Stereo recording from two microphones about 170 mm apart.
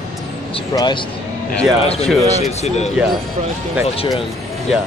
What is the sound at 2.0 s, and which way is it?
Speech, centre (ahead or behind).